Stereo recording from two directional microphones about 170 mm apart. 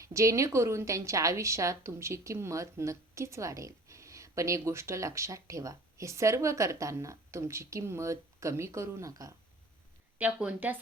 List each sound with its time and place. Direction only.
0.0 s a woman's voice: 20° right (ahead or behind)
10.2 s a woman's voice: 10° right (ahead or behind)